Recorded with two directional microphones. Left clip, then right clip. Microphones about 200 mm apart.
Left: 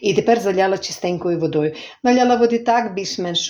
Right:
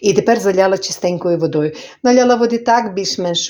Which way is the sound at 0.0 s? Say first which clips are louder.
Right 3 dB; 30° right (ahead or behind).